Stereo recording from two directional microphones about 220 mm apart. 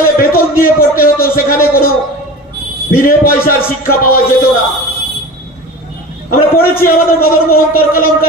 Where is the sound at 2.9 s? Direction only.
40° left (ahead or behind).